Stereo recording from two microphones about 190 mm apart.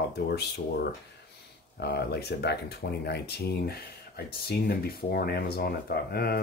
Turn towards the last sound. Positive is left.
turn(degrees=55)  # may be behind; listen again after turning